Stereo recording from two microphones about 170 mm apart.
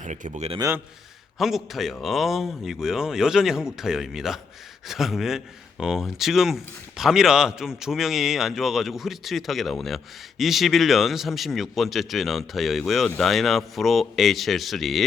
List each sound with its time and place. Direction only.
0.0 s a man's voice: 45° right (ahead or behind)
1.4 s speech: centre (ahead or behind)